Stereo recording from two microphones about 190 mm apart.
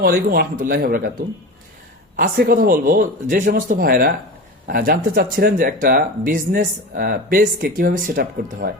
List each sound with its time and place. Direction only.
0.0 s speech: 50° right (ahead or behind)
2.1 s speech: 50° right (ahead or behind)